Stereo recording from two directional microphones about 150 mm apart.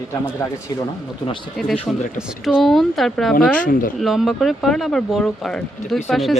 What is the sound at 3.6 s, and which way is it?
Speech, 70° left (ahead or behind).